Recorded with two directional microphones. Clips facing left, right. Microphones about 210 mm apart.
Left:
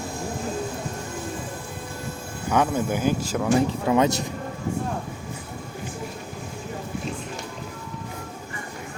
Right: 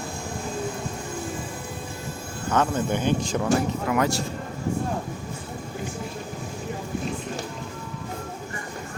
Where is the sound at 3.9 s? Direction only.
20° left (ahead or behind).